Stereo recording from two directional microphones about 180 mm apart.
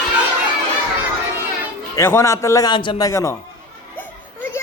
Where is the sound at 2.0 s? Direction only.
15° left (ahead or behind).